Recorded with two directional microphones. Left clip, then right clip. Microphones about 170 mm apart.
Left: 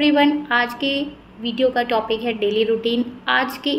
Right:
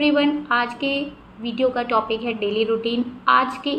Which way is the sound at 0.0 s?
Centre (ahead or behind).